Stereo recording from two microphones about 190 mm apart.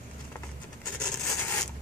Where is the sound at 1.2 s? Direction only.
10° left (ahead or behind).